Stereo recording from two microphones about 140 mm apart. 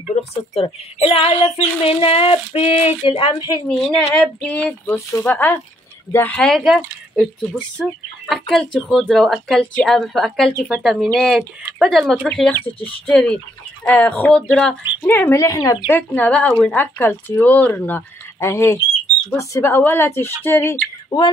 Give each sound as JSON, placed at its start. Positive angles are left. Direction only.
{"t": 0.1, "sound": "speech", "side_deg": 50}
{"t": 3.6, "sound": "speech", "side_deg": 5}
{"t": 15.9, "sound": "speech", "side_deg": 10}
{"t": 20.4, "sound": "bird", "side_deg": 15}